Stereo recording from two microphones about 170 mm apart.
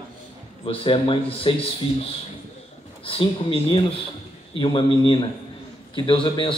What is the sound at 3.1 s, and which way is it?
A man's voice, 30° left (ahead or behind).